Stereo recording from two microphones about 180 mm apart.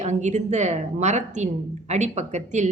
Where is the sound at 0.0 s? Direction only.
40° right (ahead or behind).